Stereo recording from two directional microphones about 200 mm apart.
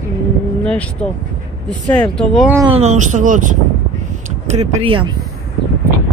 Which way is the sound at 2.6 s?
30° right (ahead or behind).